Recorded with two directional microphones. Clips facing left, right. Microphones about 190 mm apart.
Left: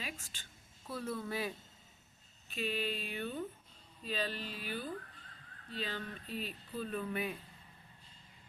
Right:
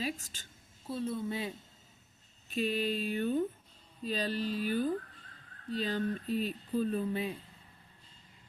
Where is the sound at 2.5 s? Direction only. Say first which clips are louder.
Right 6 dB; 40° right (ahead or behind).